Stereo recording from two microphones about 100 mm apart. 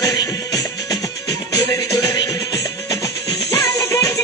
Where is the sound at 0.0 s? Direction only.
35° left (ahead or behind).